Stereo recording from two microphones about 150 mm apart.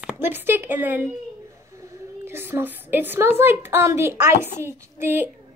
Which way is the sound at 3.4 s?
15° right (ahead or behind).